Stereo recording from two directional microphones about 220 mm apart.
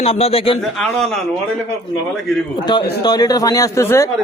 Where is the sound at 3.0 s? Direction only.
15° left (ahead or behind).